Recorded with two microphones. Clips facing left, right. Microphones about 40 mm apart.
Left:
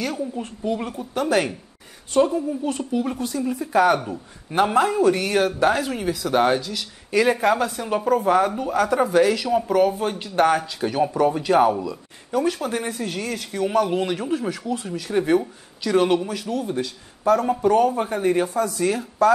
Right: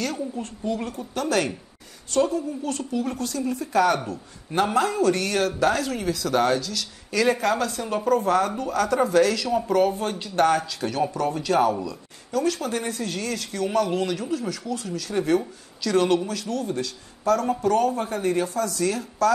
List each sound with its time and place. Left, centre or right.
0.0 s a man's voice: centre